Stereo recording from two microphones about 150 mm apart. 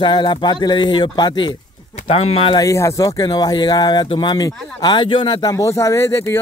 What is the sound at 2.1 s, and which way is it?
Speech, 40° left (ahead or behind).